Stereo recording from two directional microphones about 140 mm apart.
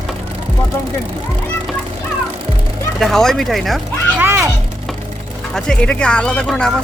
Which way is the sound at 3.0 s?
Centre (ahead or behind).